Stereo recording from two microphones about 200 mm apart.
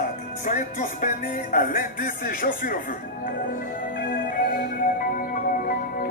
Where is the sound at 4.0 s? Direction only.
45° left (ahead or behind).